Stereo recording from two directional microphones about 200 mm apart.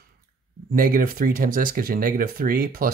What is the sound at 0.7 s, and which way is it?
Speech, 45° right (ahead or behind).